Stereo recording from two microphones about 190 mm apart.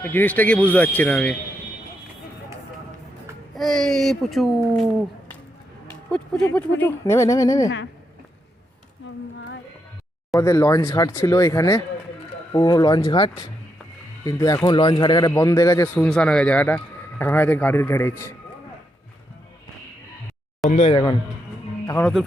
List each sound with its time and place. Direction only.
0.0 s a man's voice: 10° left (ahead or behind)
3.5 s a man's voice: centre (ahead or behind); by 7.7 s 15° left (ahead or behind)
9.0 s a sound: 75° left (ahead or behind)
10.3 s a man's voice: 15° left (ahead or behind)
20.7 s speech: 40° left (ahead or behind)
20.9 s speech: 25° left (ahead or behind)
21.8 s speech: 10° left (ahead or behind)